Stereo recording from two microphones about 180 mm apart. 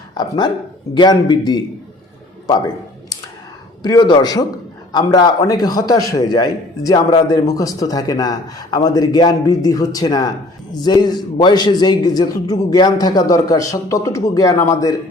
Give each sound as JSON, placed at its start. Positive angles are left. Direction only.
{"t": 0.1, "sound": "a man's voice", "side_deg": 25}
{"t": 3.8, "sound": "a man's voice", "side_deg": 25}